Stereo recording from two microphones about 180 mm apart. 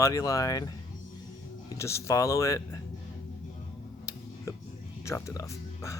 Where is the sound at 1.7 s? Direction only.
15° left (ahead or behind).